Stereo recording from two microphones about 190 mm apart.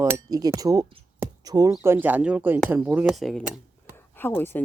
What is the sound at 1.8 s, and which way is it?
Speech, 10° right (ahead or behind).